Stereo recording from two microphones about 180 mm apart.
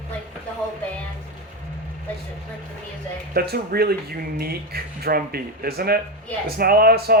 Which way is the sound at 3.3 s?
60° right (ahead or behind).